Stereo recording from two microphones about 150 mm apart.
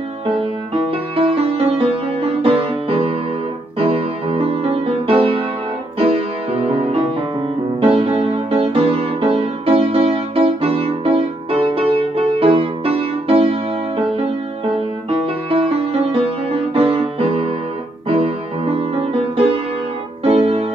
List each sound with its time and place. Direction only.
1.1 s music: 40° right (ahead or behind)
15.0 s music: 35° right (ahead or behind)